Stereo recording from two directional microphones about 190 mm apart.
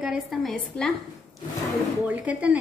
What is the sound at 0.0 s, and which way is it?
Speech, centre (ahead or behind).